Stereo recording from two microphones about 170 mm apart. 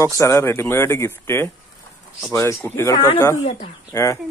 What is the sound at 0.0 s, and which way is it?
Speech, 20° left (ahead or behind).